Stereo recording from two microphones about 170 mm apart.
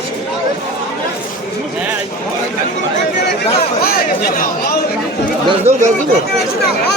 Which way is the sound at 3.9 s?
60° left (ahead or behind).